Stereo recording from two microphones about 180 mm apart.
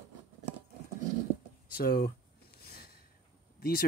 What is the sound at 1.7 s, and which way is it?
Speech, 55° left (ahead or behind).